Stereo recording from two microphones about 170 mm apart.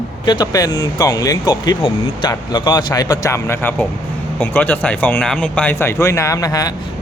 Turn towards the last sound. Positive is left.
turn(degrees=20)  # may be behind; listen again after turning